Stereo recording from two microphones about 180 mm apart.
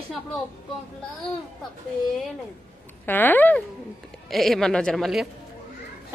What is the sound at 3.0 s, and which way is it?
A woman's voice, 10° left (ahead or behind).